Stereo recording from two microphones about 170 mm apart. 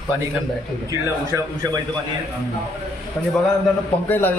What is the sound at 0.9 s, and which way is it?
Speech, 20° right (ahead or behind).